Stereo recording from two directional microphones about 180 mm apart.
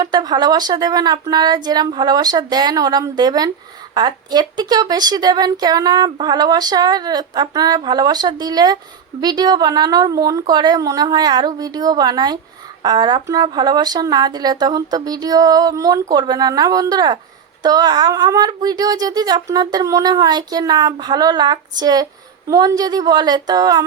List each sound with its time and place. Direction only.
0.0 s a woman's voice: 20° right (ahead or behind)